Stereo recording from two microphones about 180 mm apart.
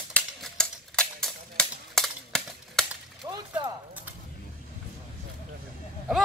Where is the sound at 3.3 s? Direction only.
20° right (ahead or behind).